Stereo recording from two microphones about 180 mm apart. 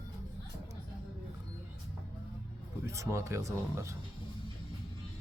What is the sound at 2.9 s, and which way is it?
Speech, 15° right (ahead or behind).